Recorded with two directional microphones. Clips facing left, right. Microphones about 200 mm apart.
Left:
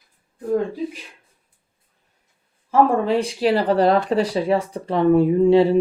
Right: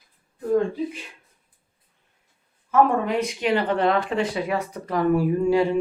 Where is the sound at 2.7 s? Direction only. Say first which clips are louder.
Left 3 dB; 30° left (ahead or behind).